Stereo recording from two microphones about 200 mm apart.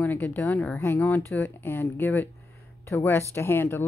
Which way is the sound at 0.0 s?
10° left (ahead or behind).